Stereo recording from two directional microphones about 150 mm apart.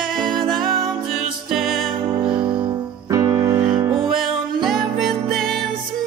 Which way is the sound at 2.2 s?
35° right (ahead or behind).